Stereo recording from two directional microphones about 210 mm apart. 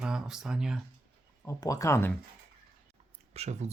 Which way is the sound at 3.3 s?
30° right (ahead or behind).